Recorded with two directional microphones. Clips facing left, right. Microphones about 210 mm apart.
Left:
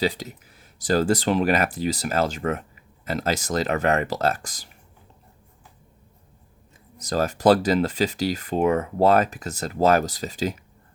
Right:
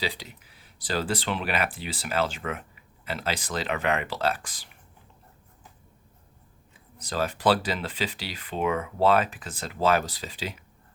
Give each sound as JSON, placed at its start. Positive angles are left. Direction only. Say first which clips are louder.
{"t": 0.0, "sound": "speech", "louder": "left 8 dB", "side_deg": 45}
{"t": 7.0, "sound": "speech", "louder": "left 5 dB", "side_deg": 45}